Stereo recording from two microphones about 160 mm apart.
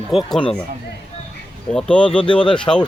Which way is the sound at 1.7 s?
5° left (ahead or behind).